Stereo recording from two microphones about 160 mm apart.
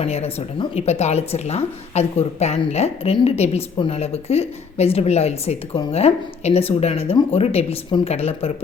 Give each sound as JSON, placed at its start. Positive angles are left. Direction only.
{"t": 0.0, "sound": "a woman's voice", "side_deg": 40}